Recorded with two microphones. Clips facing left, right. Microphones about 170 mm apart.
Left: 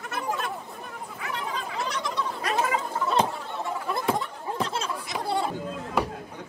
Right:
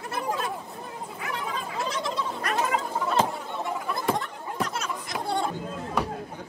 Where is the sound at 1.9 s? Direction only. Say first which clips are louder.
Right 1 dB; 25° right (ahead or behind).